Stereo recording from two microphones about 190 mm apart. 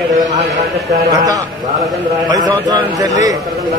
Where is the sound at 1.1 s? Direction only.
20° right (ahead or behind).